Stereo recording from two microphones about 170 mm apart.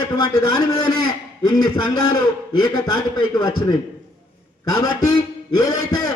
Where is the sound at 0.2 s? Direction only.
25° left (ahead or behind).